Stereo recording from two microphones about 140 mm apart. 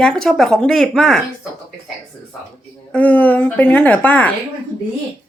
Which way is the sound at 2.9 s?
10° left (ahead or behind).